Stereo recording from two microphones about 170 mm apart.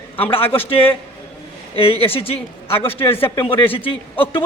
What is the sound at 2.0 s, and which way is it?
Speech, 35° left (ahead or behind).